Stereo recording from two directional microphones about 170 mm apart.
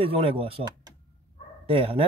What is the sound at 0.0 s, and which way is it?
A man's voice, 35° right (ahead or behind).